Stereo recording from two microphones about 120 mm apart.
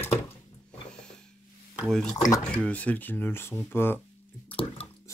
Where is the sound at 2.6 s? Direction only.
10° left (ahead or behind).